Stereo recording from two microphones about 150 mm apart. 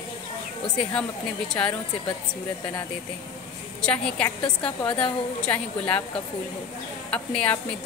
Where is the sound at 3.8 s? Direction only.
5° left (ahead or behind).